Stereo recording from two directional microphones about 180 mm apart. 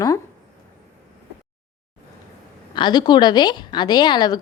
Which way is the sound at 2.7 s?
25° left (ahead or behind).